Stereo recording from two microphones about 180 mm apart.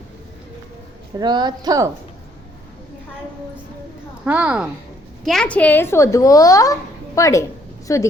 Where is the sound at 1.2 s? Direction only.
25° right (ahead or behind).